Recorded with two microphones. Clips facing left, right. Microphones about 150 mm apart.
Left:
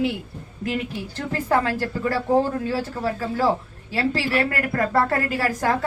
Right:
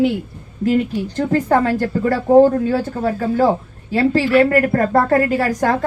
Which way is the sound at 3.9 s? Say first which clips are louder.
Right 8 dB; 50° right (ahead or behind).